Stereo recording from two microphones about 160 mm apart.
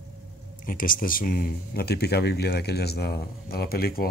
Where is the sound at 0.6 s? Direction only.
60° left (ahead or behind).